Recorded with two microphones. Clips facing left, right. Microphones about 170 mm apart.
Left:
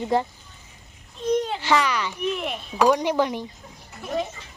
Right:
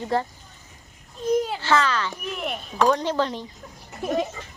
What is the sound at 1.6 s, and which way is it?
A woman's voice, 15° left (ahead or behind).